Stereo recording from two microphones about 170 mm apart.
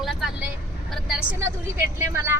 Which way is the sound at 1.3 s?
15° right (ahead or behind).